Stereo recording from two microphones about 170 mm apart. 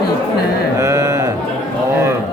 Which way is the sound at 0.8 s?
15° right (ahead or behind).